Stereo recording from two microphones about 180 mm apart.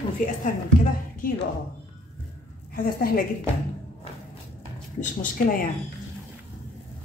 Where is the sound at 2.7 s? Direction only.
55° left (ahead or behind).